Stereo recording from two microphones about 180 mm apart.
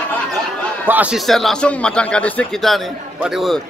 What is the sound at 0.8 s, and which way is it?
A man's voice, 10° right (ahead or behind).